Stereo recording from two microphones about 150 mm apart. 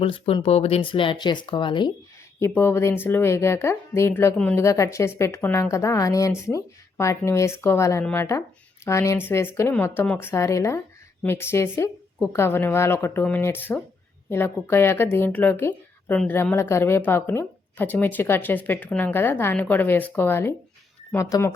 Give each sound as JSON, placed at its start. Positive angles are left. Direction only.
{"t": 0.0, "sound": "speech", "side_deg": 35}
{"t": 2.4, "sound": "speech", "side_deg": 15}
{"t": 4.6, "sound": "a woman's voice", "side_deg": 20}